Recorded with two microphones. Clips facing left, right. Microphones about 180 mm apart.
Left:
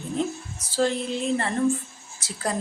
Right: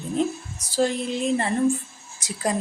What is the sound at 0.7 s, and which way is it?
A woman's voice, 15° right (ahead or behind).